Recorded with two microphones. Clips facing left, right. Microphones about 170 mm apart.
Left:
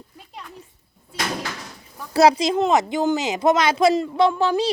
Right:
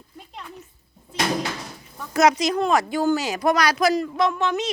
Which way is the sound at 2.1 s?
30° left (ahead or behind).